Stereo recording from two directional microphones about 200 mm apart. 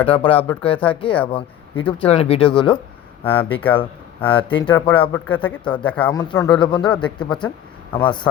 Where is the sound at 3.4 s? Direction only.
25° left (ahead or behind).